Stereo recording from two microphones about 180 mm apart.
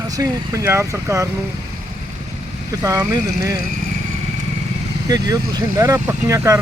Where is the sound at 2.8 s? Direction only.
20° right (ahead or behind).